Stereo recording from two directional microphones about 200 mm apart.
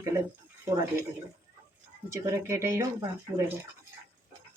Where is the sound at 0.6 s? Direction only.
15° right (ahead or behind).